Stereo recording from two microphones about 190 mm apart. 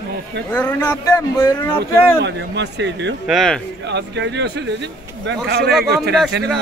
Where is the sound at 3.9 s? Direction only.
65° right (ahead or behind).